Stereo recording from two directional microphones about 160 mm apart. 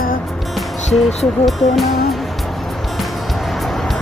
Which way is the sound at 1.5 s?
Centre (ahead or behind).